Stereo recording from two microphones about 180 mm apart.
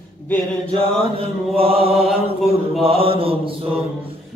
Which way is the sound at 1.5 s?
30° right (ahead or behind).